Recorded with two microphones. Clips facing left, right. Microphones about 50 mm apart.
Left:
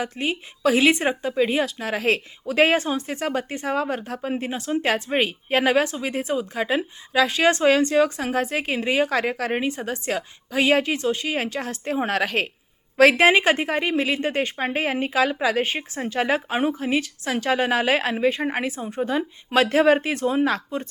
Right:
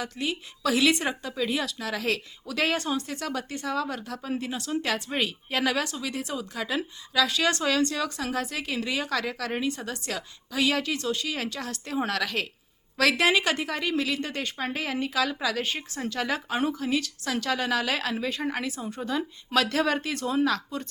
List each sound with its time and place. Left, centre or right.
0.0 s a woman's voice: left